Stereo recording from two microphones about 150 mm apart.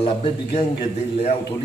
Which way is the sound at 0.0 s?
40° left (ahead or behind).